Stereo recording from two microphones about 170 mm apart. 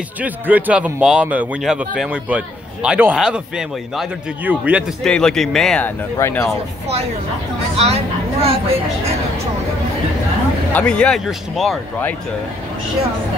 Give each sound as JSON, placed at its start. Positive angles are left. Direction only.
{"t": 0.2, "sound": "speech", "side_deg": -10}
{"t": 5.0, "sound": "speech", "side_deg": 5}
{"t": 7.7, "sound": "speech", "side_deg": -35}
{"t": 10.7, "sound": "speech", "side_deg": 5}